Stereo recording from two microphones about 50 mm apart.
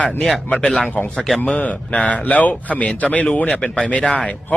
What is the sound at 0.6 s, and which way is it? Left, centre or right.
Speech, centre.